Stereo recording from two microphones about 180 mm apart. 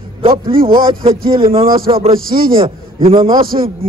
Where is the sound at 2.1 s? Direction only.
55° right (ahead or behind).